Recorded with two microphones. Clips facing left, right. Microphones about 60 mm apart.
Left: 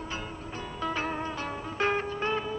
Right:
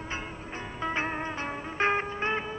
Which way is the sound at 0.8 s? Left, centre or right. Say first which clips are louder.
Right 1 dB; right.